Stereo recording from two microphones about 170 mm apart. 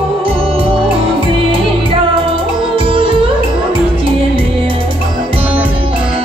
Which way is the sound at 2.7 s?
30° right (ahead or behind).